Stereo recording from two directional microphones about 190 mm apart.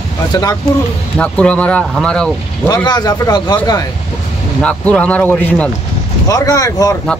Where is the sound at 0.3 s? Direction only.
20° left (ahead or behind).